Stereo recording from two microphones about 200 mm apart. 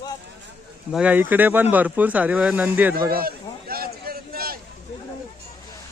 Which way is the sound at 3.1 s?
50° right (ahead or behind).